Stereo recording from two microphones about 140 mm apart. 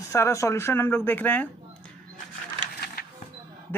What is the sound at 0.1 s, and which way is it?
Speech, 20° left (ahead or behind).